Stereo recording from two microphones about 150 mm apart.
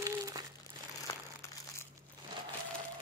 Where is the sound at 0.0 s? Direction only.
25° right (ahead or behind).